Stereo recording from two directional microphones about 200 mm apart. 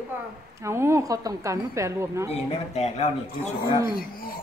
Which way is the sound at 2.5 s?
30° left (ahead or behind).